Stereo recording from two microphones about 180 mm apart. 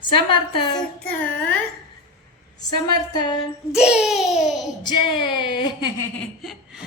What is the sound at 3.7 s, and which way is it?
Speech, 5° right (ahead or behind).